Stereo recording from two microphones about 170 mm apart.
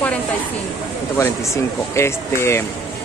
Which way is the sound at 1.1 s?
15° left (ahead or behind).